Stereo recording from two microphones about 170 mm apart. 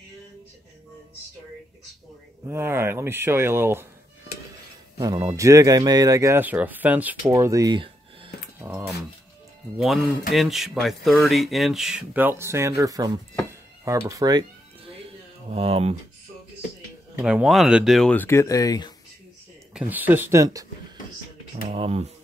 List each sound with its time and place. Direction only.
2.4 s speech: 15° right (ahead or behind)
4.9 s speech: 25° right (ahead or behind)
7.3 s speech: 20° right (ahead or behind)
8.5 s speech: 10° right (ahead or behind)
10.3 s speech: centre (ahead or behind); by 13.2 s 20° right (ahead or behind)
13.5 s music: 15° right (ahead or behind)
15.5 s speech: 35° right (ahead or behind)
17.2 s speech: 5° right (ahead or behind); by 18.9 s 25° left (ahead or behind)
19.7 s speech: 10° right (ahead or behind)
21.6 s speech: 35° right (ahead or behind)